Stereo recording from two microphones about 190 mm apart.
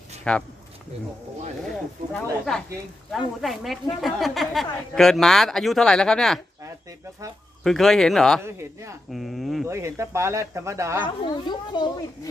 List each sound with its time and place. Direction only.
0.3 s a woman's voice: 5° left (ahead or behind)
1.7 s a woman's voice: 5° left (ahead or behind)
7.6 s a woman's voice: centre (ahead or behind)
8.5 s speech: 15° right (ahead or behind)
9.1 s a woman's voice: centre (ahead or behind)
9.7 s speech: 15° right (ahead or behind)
11.1 s a child's voice: 25° left (ahead or behind)